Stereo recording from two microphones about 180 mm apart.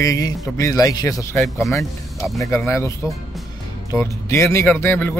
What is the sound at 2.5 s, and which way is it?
Speech, 15° left (ahead or behind).